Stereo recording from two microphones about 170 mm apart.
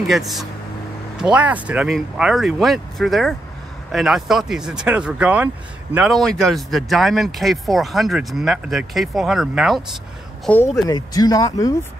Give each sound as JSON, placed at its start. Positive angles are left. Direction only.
{"t": 0.0, "sound": "speech", "side_deg": 0}
{"t": 10.9, "sound": "speech", "side_deg": 25}